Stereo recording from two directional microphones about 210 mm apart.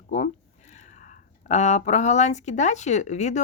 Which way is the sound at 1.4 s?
35° left (ahead or behind).